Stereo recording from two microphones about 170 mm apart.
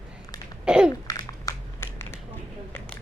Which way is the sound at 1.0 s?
20° left (ahead or behind).